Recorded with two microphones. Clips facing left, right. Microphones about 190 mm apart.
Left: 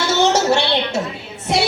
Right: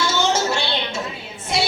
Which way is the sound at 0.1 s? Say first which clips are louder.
Left 5 dB; 70° left (ahead or behind).